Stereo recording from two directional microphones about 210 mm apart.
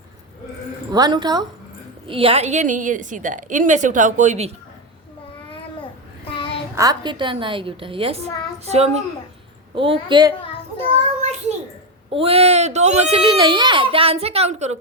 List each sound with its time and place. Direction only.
0.9 s a child's voice: 20° right (ahead or behind)
6.2 s child singing: 25° left (ahead or behind)
6.7 s a child's voice: 20° right (ahead or behind)
11.2 s child singing: 30° right (ahead or behind)
12.1 s a child's voice: 25° right (ahead or behind)